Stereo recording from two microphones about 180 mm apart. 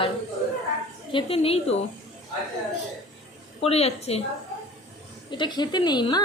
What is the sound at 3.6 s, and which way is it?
Speech, 35° left (ahead or behind).